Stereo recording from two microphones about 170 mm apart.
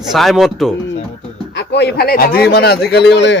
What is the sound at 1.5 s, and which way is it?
A man's voice, 85° left.